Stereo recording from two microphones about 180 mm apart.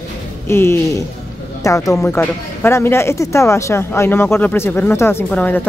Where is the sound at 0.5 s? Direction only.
15° left (ahead or behind).